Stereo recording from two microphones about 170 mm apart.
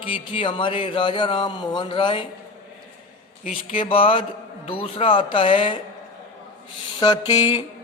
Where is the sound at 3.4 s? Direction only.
35° left (ahead or behind).